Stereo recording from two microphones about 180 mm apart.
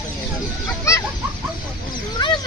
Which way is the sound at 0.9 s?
15° left (ahead or behind).